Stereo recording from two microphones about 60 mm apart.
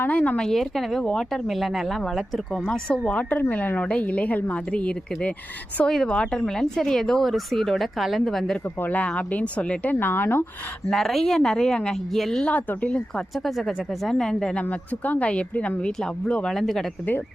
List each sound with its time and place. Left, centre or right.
0.0 s speech: left
0.4 s speech: centre
2.6 s speech: centre
8.8 s speech: left
10.9 s speech: centre
12.4 s speech: left
13.3 s speech: centre
14.6 s speech: left
15.8 s speech: centre